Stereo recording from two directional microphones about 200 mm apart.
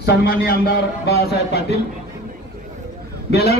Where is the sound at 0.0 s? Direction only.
50° left (ahead or behind).